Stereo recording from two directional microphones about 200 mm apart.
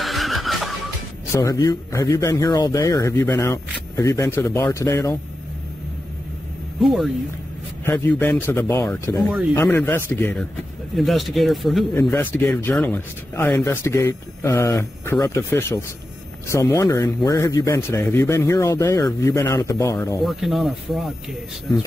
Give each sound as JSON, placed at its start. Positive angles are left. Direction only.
{"t": 0.0, "sound": "neigh", "side_deg": 0}
{"t": 1.3, "sound": "speech", "side_deg": 15}
{"t": 6.8, "sound": "speech", "side_deg": 0}
{"t": 9.3, "sound": "speech", "side_deg": 0}
{"t": 9.6, "sound": "speech", "side_deg": 10}
{"t": 20.2, "sound": "speech", "side_deg": 0}